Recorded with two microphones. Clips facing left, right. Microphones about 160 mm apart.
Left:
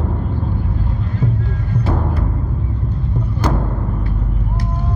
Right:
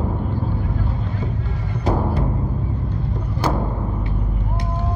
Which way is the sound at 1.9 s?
10° right (ahead or behind).